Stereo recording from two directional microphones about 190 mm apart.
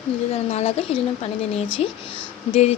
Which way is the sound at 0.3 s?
35° left (ahead or behind).